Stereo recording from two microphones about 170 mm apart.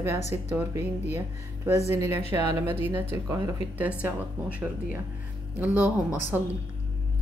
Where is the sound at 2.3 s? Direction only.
15° right (ahead or behind).